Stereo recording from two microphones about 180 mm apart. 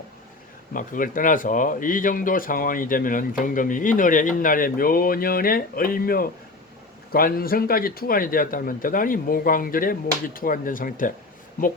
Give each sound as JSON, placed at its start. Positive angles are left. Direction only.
{"t": 0.7, "sound": "speech", "side_deg": 50}